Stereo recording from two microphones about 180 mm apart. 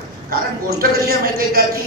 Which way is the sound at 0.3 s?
60° right (ahead or behind).